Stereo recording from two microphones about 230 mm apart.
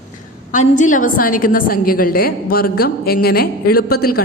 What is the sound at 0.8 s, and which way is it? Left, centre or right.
A woman's voice, left.